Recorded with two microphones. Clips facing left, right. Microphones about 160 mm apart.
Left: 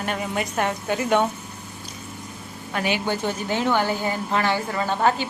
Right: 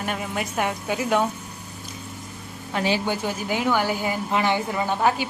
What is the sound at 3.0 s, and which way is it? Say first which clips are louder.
Speech: left 1 dB; 10° right (ahead or behind).